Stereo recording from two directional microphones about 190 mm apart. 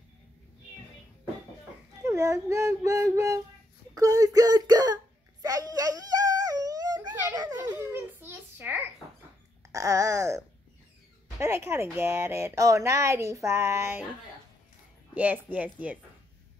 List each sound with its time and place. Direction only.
2.0 s speech: 15° right (ahead or behind)
3.9 s whimper: 20° right (ahead or behind)
7.3 s a sound: 20° right (ahead or behind)
9.7 s speech: 15° right (ahead or behind)
15.1 s speech: 10° right (ahead or behind)